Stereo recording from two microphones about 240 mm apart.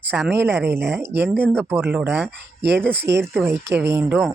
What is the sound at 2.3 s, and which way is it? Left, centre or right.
Speech, right.